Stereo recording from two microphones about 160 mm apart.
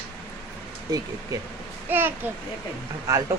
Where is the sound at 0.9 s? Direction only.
25° right (ahead or behind).